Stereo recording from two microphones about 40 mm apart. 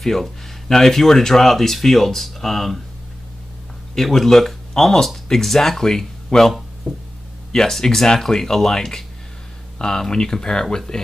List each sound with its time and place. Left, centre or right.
0.0 s speech: centre
3.9 s speech: centre